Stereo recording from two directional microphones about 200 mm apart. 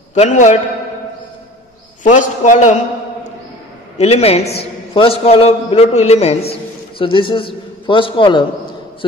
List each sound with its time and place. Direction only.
0.1 s a man's voice: 35° left (ahead or behind)
2.0 s a man's voice: 40° left (ahead or behind)
4.0 s a man's voice: 30° left (ahead or behind)